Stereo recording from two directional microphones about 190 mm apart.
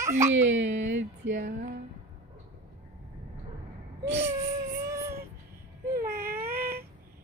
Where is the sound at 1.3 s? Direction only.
40° right (ahead or behind).